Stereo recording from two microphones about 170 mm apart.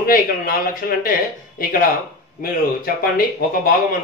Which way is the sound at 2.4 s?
60° left (ahead or behind).